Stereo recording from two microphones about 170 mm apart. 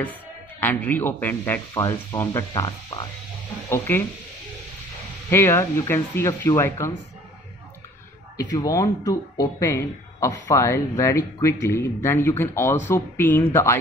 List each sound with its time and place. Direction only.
0.0 s speech: 10° left (ahead or behind)
5.3 s speech: 15° left (ahead or behind)
8.5 s speech: 20° left (ahead or behind)